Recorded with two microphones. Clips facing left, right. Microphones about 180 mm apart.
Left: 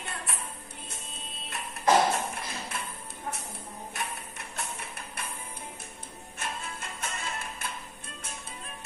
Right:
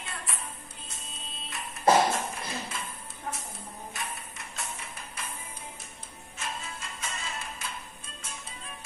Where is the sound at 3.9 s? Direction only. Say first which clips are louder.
Left 4 dB; 60° left (ahead or behind).